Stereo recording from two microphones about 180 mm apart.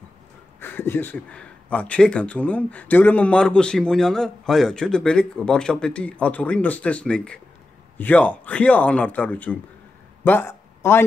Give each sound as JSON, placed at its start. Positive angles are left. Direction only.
{"t": 0.6, "sound": "speech", "side_deg": 10}